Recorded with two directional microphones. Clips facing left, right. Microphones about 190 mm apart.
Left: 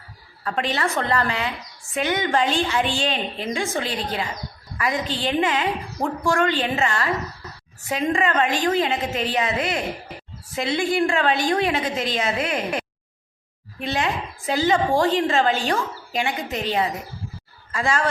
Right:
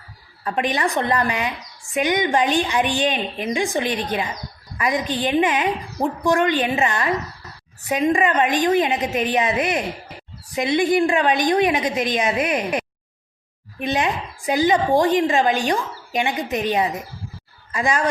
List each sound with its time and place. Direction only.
0.4 s a woman's voice: 15° right (ahead or behind)